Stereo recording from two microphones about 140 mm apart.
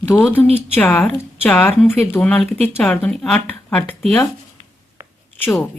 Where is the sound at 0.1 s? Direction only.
10° left (ahead or behind).